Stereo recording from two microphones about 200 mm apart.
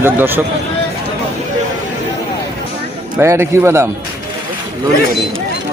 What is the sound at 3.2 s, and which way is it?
Speech, 10° right (ahead or behind).